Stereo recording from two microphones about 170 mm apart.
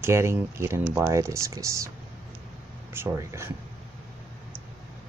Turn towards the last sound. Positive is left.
turn(degrees=-15)  # may be behind; listen again after turning